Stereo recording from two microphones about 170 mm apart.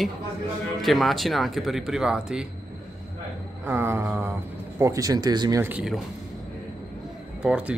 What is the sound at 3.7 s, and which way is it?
Mantra, 15° right (ahead or behind).